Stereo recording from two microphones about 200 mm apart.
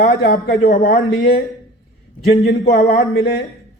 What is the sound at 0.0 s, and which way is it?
A man's voice, 45° left (ahead or behind).